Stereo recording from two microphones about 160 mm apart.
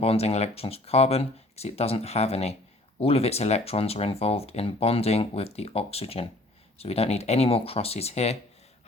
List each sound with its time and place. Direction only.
0.0 s speech: 40° left (ahead or behind)